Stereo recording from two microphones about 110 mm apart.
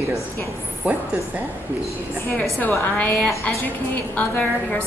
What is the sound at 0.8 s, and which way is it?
Speech, 10° right (ahead or behind).